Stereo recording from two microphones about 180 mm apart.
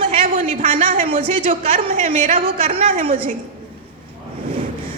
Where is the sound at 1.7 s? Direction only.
45° right (ahead or behind).